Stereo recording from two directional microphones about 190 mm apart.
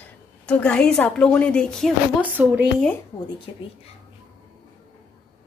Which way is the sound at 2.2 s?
10° right (ahead or behind).